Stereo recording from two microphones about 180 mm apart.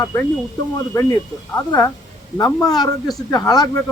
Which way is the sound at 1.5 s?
20° left (ahead or behind).